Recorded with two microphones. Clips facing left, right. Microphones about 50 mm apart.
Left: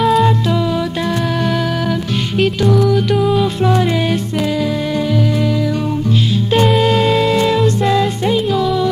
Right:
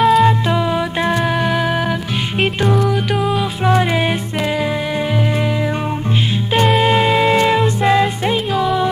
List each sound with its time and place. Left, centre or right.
0.0 s music: centre
0.5 s music: right
2.9 s music: centre
3.6 s music: right
6.8 s music: right